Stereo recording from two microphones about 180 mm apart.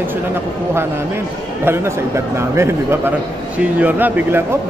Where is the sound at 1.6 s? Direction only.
15° right (ahead or behind).